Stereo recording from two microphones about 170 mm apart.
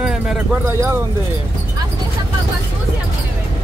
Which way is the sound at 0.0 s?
5° right (ahead or behind).